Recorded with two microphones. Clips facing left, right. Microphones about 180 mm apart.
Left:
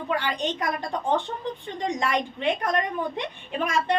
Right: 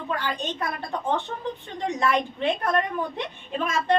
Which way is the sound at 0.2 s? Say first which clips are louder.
Left 1 dB; 15° left (ahead or behind).